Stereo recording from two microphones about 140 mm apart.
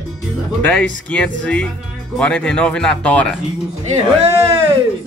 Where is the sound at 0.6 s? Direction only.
10° left (ahead or behind).